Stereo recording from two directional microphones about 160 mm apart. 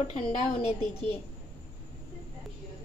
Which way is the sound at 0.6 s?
40° left (ahead or behind).